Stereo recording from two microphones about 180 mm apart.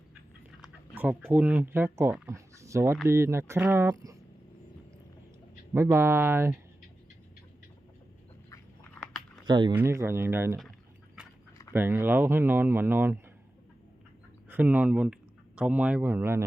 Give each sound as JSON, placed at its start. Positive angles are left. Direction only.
{"t": 0.6, "sound": "a sound", "side_deg": -10}
{"t": 1.3, "sound": "speech", "side_deg": -10}
{"t": 5.7, "sound": "speech", "side_deg": -15}
{"t": 9.0, "sound": "a sound", "side_deg": 0}
{"t": 9.5, "sound": "speech", "side_deg": -25}
{"t": 9.7, "sound": "speech", "side_deg": -15}
{"t": 11.7, "sound": "speech", "side_deg": -10}
{"t": 14.5, "sound": "speech", "side_deg": -10}